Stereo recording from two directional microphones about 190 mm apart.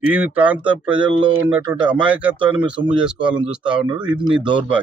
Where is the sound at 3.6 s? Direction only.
25° right (ahead or behind).